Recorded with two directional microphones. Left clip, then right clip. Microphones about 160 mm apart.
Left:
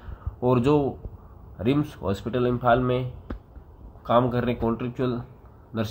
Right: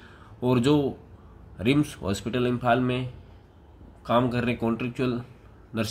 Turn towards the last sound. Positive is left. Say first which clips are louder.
# even
turn(degrees=-15)  # may be behind; listen again after turning